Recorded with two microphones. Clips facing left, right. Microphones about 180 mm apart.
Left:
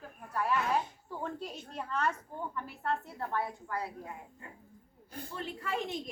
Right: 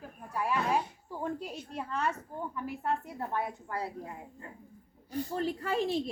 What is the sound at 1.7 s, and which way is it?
A woman's voice, 10° right (ahead or behind).